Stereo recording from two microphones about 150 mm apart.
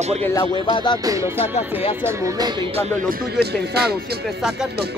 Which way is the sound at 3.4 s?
90° right.